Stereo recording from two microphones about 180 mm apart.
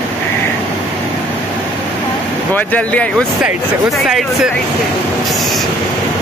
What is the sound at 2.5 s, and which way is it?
Speech, 10° left (ahead or behind).